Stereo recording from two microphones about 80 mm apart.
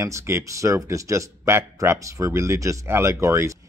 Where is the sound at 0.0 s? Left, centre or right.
Right.